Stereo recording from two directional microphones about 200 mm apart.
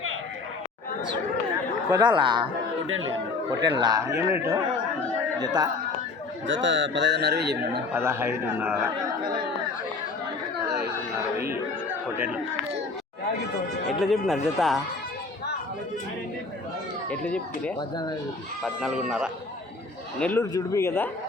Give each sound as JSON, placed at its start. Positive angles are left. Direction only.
{"t": 1.9, "sound": "speech", "side_deg": -20}
{"t": 2.8, "sound": "speech", "side_deg": -90}
{"t": 3.8, "sound": "a man's voice", "side_deg": -20}
{"t": 6.5, "sound": "speech", "side_deg": -65}
{"t": 7.9, "sound": "a man's voice", "side_deg": -10}
{"t": 14.0, "sound": "speech", "side_deg": 0}
{"t": 17.1, "sound": "speech", "side_deg": 5}
{"t": 17.7, "sound": "speech", "side_deg": 20}
{"t": 18.6, "sound": "speech", "side_deg": 0}
{"t": 20.1, "sound": "speech", "side_deg": 10}